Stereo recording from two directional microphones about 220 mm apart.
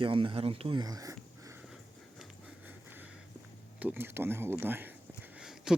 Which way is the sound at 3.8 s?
10° right (ahead or behind).